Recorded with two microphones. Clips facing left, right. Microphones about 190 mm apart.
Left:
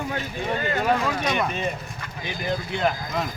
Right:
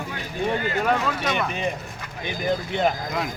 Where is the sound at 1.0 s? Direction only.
15° left (ahead or behind).